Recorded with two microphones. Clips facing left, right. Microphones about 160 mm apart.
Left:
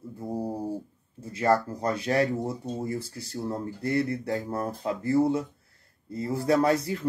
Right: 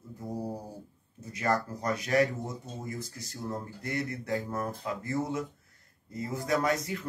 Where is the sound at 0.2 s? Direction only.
30° left (ahead or behind).